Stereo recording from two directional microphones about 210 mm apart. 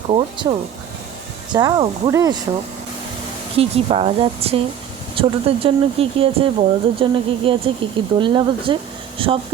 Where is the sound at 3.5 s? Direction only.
30° right (ahead or behind).